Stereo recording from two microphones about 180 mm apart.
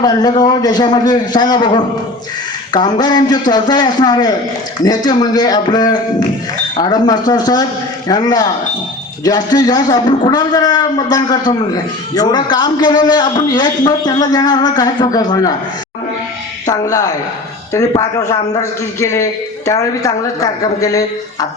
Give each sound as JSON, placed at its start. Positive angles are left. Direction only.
{"t": 0.0, "sound": "a man's voice", "side_deg": 20}
{"t": 16.6, "sound": "a man's voice", "side_deg": 20}